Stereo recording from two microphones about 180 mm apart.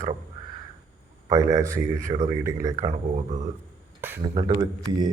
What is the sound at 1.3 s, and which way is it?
A man's voice, 20° right (ahead or behind).